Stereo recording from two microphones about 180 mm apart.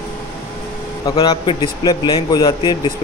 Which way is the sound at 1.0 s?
30° left (ahead or behind).